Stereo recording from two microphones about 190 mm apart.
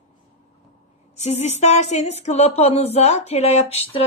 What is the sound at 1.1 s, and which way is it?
Speech, 35° left (ahead or behind).